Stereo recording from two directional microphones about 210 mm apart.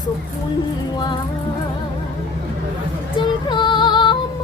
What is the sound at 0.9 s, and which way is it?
Music, 20° left (ahead or behind).